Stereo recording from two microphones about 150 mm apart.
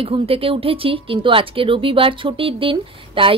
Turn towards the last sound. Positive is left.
turn(degrees=-35)  # may be behind; listen again after turning